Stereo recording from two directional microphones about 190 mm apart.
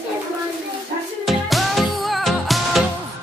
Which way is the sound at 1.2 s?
Centre (ahead or behind).